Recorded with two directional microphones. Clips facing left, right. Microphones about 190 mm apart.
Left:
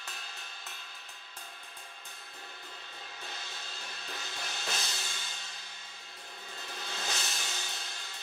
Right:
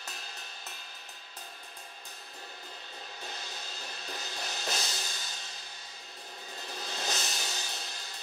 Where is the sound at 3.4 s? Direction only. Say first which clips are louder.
Right 3 dB; 40° right (ahead or behind).